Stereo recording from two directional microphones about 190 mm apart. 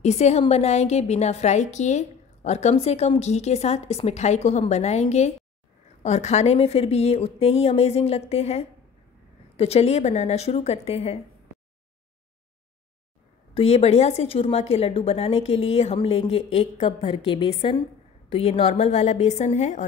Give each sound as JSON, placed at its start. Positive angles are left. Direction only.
{"t": 0.0, "sound": "a woman's voice", "side_deg": 35}
{"t": 13.6, "sound": "a woman's voice", "side_deg": 35}